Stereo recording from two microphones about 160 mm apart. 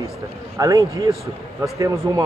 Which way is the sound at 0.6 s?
20° right (ahead or behind).